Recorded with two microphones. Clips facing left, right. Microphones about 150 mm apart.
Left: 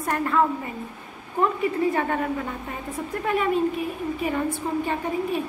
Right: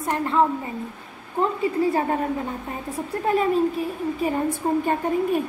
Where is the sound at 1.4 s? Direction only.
30° right (ahead or behind); by 4.8 s 45° right (ahead or behind).